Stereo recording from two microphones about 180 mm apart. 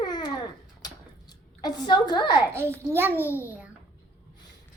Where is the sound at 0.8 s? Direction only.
20° left (ahead or behind).